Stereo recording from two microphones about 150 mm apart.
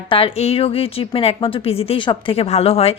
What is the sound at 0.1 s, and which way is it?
Speech, 40° left (ahead or behind).